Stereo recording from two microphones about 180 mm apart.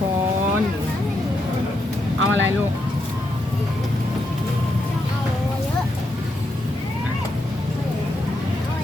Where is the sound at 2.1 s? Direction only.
90° right.